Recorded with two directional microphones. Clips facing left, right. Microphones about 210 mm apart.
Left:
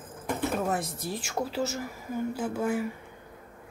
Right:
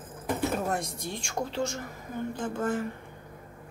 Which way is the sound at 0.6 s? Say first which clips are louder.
Left 1 dB; 5° left (ahead or behind).